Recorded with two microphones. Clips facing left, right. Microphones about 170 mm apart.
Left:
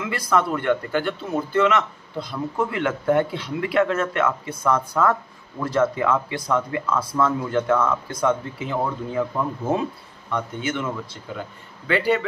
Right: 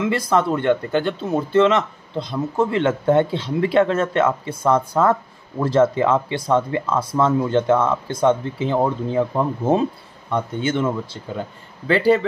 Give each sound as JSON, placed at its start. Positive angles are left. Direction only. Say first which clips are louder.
{"t": 0.0, "sound": "speech", "louder": "right 4 dB", "side_deg": -25}